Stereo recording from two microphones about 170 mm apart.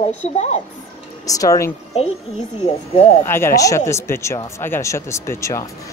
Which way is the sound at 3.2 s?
15° left (ahead or behind).